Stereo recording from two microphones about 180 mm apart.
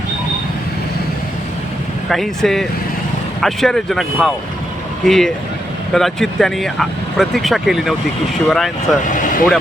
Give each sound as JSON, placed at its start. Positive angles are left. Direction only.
{"t": 2.0, "sound": "speech", "side_deg": 0}
{"t": 9.0, "sound": "speech", "side_deg": 45}